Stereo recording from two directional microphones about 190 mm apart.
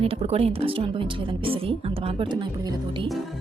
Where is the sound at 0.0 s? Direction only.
30° right (ahead or behind).